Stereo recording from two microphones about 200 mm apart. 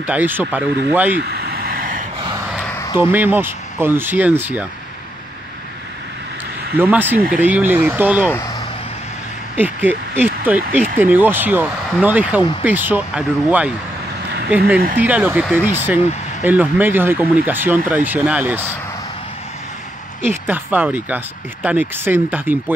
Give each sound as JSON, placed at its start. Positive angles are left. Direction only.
{"t": 0.0, "sound": "speech", "side_deg": -10}
{"t": 1.3, "sound": "vehicle", "side_deg": -50}
{"t": 3.0, "sound": "speech", "side_deg": -10}
{"t": 6.8, "sound": "speech", "side_deg": -10}
{"t": 8.3, "sound": "vehicle", "side_deg": 15}
{"t": 9.6, "sound": "speech", "side_deg": -10}
{"t": 20.2, "sound": "speech", "side_deg": -10}